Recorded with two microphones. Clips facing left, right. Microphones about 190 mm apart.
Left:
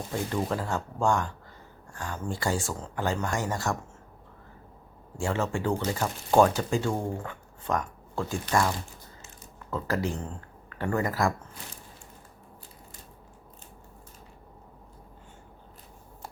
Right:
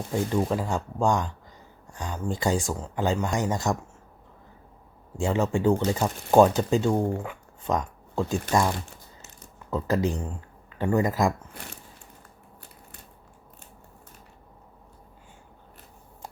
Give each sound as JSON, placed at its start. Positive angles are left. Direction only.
{"t": 0.1, "sound": "speech", "side_deg": -15}
{"t": 5.1, "sound": "speech", "side_deg": -15}